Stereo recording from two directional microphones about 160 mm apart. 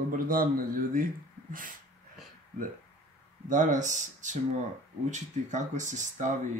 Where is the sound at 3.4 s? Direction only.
50° right (ahead or behind).